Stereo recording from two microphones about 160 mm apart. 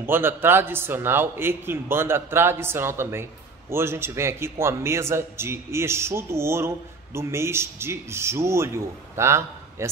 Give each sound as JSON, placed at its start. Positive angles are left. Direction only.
{"t": 0.0, "sound": "a man's voice", "side_deg": -15}